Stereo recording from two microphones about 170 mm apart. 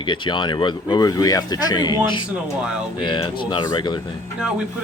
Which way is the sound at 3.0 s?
30° left (ahead or behind).